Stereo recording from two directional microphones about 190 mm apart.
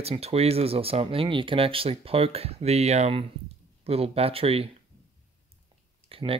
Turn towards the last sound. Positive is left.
turn(degrees=-30)  # may be behind; listen again after turning